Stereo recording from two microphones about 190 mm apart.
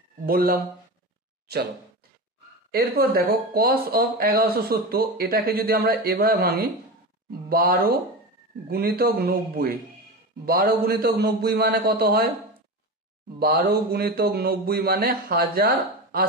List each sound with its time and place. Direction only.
0.3 s speech: 50° right (ahead or behind)
2.7 s speech: 55° right (ahead or behind)
13.4 s speech: 55° right (ahead or behind)